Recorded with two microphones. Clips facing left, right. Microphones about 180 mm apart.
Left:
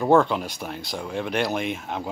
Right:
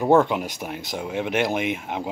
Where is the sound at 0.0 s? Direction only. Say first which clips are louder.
Right 1 dB; 15° right (ahead or behind).